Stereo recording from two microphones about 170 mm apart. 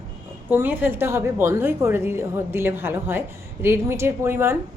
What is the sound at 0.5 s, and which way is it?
A woman's voice, 10° right (ahead or behind).